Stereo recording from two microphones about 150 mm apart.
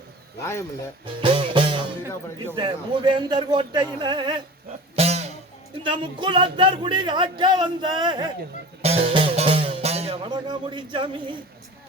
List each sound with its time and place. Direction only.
0.3 s speech: 20° left (ahead or behind)
1.2 s speech: 35° right (ahead or behind)
4.9 s music: 45° right (ahead or behind)
5.8 s speech: 30° right (ahead or behind)
8.8 s music: 40° right (ahead or behind)
10.2 s speech: 30° right (ahead or behind)